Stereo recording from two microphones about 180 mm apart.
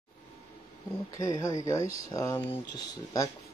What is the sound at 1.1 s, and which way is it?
Speech, 20° left (ahead or behind).